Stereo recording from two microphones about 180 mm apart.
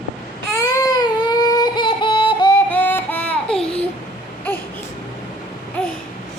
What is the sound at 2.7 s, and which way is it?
Child singing, 10° left (ahead or behind).